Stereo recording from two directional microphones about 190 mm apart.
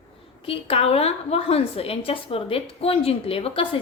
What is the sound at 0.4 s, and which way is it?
A woman's voice, 30° left (ahead or behind).